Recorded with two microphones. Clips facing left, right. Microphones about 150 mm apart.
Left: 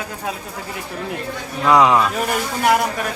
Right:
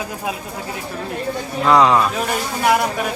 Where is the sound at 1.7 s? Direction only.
15° left (ahead or behind).